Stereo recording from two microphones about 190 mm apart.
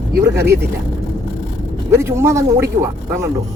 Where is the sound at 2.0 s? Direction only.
15° right (ahead or behind).